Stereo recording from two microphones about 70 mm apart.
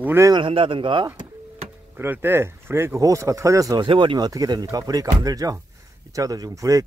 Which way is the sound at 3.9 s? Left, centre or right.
Right.